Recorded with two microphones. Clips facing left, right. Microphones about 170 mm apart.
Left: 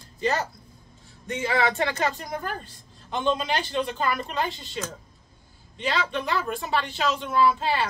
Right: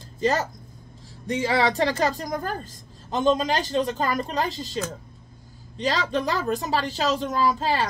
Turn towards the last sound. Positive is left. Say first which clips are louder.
# left 1 dB
turn(degrees=-40)  # may be behind; listen again after turning